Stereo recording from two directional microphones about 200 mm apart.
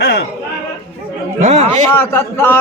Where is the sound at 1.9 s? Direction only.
10° left (ahead or behind).